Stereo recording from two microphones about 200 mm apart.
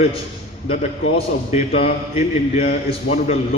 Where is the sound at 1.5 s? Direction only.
30° left (ahead or behind).